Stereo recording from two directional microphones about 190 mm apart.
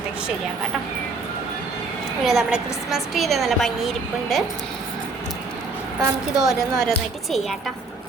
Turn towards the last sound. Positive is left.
turn(degrees=0)  # may be behind; listen again after turning